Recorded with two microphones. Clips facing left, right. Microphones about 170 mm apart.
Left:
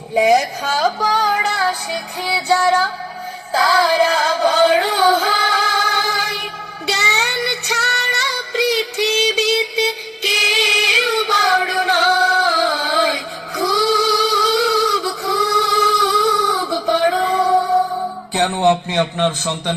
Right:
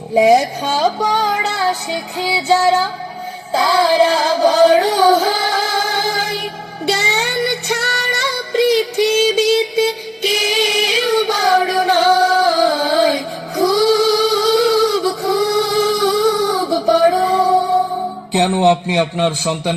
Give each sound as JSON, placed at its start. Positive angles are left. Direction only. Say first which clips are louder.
{"t": 0.1, "sound": "music", "louder": "right 3 dB", "side_deg": -35}
{"t": 18.3, "sound": "a man's voice", "louder": "right 3 dB", "side_deg": -20}